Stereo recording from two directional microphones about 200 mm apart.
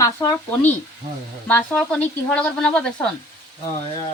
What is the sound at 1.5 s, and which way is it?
Speech, 5° left (ahead or behind).